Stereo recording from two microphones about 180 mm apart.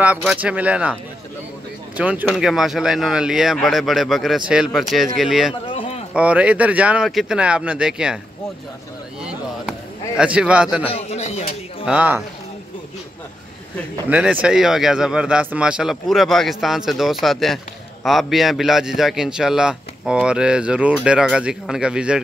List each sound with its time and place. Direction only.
0.0 s speech: 5° right (ahead or behind)
2.0 s a man's voice: 10° right (ahead or behind)
5.7 s a sound: 30° left (ahead or behind)
6.1 s speech: 5° right (ahead or behind)
9.2 s a sound: 5° right (ahead or behind)
10.9 s speech: 35° left (ahead or behind)
11.8 s speech: 5° right (ahead or behind)
14.0 s a man's voice: 10° right (ahead or behind)